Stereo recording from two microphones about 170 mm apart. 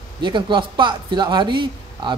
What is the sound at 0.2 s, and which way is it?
Speech, 30° right (ahead or behind).